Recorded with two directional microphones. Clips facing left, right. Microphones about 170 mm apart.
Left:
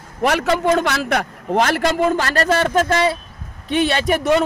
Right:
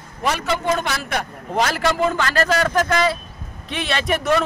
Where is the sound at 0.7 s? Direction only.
70° left (ahead or behind); by 3.2 s 30° left (ahead or behind).